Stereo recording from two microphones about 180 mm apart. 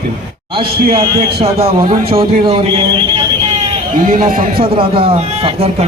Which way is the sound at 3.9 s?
50° right (ahead or behind).